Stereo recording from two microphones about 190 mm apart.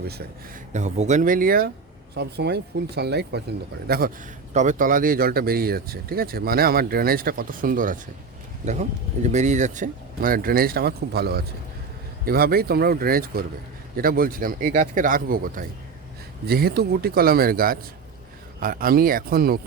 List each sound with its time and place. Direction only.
0.7 s speech: 35° right (ahead or behind); by 4.1 s 55° right (ahead or behind)
4.5 s speech: 40° right (ahead or behind)